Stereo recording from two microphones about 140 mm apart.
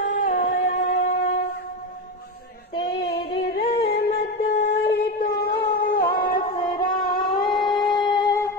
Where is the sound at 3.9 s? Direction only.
90° left.